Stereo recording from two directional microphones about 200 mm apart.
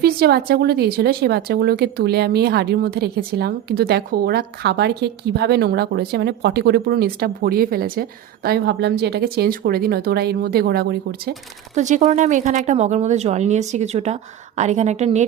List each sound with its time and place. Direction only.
0.0 s speech: 50° right (ahead or behind)
11.7 s speech: 35° right (ahead or behind)